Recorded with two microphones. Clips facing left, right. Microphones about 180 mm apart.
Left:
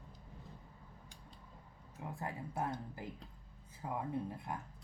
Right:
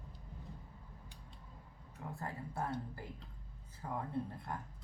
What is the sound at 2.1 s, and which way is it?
Speech, 15° left (ahead or behind).